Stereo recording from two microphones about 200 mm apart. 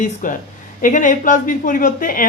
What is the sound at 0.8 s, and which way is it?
A woman's voice, 40° left (ahead or behind).